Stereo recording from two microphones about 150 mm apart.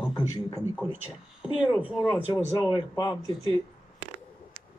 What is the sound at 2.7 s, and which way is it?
Speech, 30° left (ahead or behind).